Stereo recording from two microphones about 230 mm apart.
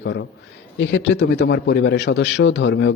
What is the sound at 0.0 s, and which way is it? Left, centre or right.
A man's voice, left.